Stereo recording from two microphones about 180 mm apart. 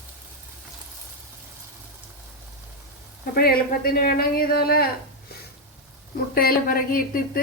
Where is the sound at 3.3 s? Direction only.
60° left (ahead or behind).